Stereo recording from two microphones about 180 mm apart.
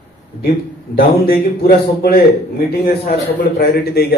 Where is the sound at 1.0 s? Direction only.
60° left (ahead or behind).